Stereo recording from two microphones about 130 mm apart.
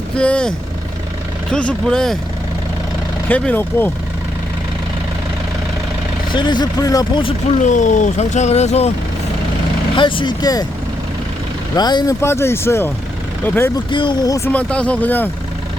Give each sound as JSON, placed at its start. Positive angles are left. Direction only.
{"t": 0.2, "sound": "speech", "side_deg": 10}
{"t": 1.5, "sound": "speech", "side_deg": 5}
{"t": 3.2, "sound": "speech", "side_deg": 10}
{"t": 6.3, "sound": "speech", "side_deg": 35}
{"t": 7.6, "sound": "speech", "side_deg": 70}
{"t": 9.9, "sound": "speech", "side_deg": 40}
{"t": 11.8, "sound": "speech", "side_deg": 35}
{"t": 12.2, "sound": "speech", "side_deg": 20}
{"t": 13.9, "sound": "speech", "side_deg": 40}
{"t": 14.3, "sound": "speech", "side_deg": 15}